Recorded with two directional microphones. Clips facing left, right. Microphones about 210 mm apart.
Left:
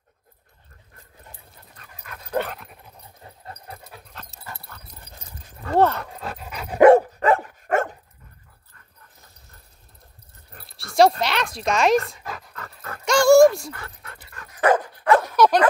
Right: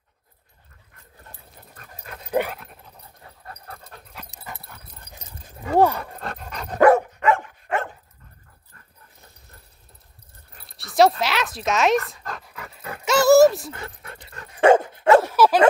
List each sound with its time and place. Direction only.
2.0 s dog: 25° right (ahead or behind)
2.3 s dog: 5° right (ahead or behind)
4.4 s dog: 20° right (ahead or behind)
5.9 s dog: centre (ahead or behind)
6.8 s dog: 30° left (ahead or behind)
10.7 s dog: centre (ahead or behind)
12.5 s dog: 10° right (ahead or behind)
13.7 s dog: 20° right (ahead or behind)
15.3 s dog: 5° right (ahead or behind)